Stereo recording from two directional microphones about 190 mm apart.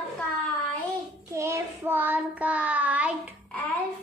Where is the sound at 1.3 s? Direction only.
15° right (ahead or behind).